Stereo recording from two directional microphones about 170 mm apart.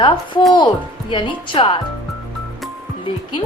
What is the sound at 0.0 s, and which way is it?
Speech, 30° left (ahead or behind).